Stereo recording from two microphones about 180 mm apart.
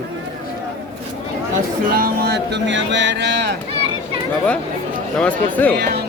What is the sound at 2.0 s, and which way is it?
Speech, 55° right (ahead or behind).